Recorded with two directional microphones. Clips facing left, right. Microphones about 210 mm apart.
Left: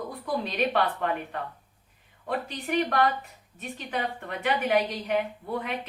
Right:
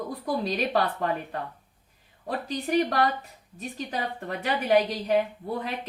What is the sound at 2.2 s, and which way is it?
A woman's voice, 35° right (ahead or behind).